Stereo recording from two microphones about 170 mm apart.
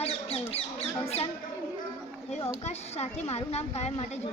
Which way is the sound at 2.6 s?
40° left (ahead or behind).